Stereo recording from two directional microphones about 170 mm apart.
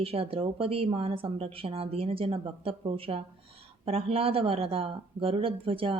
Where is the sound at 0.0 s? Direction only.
35° right (ahead or behind).